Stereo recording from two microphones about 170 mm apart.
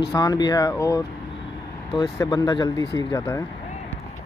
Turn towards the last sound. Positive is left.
turn(degrees=15)  # may be behind; listen again after turning